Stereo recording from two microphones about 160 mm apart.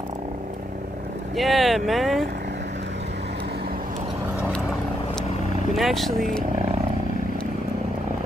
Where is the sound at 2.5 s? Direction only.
90° right; by 3.9 s 65° right (ahead or behind).